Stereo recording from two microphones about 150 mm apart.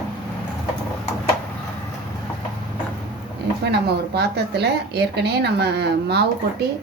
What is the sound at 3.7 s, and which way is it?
Speech, 90° right.